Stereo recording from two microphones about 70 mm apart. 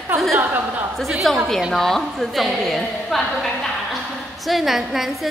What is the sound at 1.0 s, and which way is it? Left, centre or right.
A woman's voice, centre.